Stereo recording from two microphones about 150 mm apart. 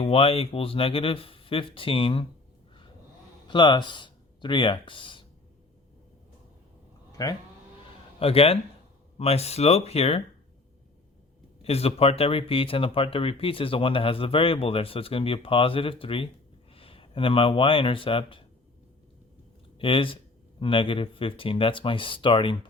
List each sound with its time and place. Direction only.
0.0 s speech: 40° left (ahead or behind)
3.4 s speech: 30° left (ahead or behind)
7.1 s livestock: 25° left (ahead or behind)
8.2 s speech: 40° left (ahead or behind)
11.6 s speech: 40° left (ahead or behind)
19.8 s speech: 35° left (ahead or behind)